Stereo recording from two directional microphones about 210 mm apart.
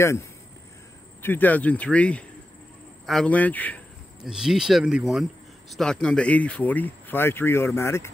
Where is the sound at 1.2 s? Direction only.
10° left (ahead or behind).